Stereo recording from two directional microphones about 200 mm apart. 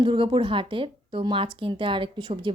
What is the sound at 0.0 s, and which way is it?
A woman's voice, 25° right (ahead or behind).